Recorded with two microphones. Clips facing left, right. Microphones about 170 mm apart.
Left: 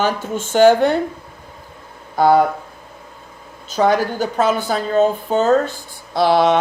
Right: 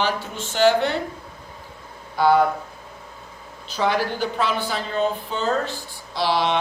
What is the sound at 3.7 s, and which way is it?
Speech, 45° left (ahead or behind).